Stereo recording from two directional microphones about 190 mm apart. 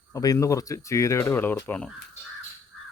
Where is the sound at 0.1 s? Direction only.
15° left (ahead or behind).